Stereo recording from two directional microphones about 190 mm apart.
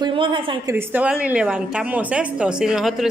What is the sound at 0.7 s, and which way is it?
A woman's voice, 10° right (ahead or behind).